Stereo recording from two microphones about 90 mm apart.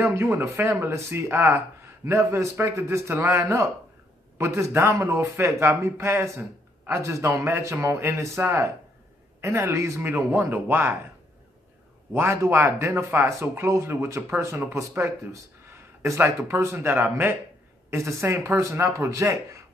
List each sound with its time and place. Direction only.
0.0 s a man's voice: 30° right (ahead or behind)
12.1 s a man's voice: 30° right (ahead or behind)